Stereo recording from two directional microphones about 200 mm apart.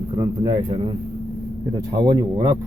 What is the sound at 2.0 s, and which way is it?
Speech, 20° right (ahead or behind).